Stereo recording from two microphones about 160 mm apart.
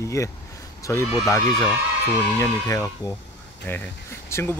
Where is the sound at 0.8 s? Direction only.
20° left (ahead or behind).